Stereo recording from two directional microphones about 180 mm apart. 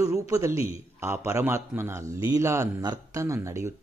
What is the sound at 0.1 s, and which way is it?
A man's voice, 15° right (ahead or behind).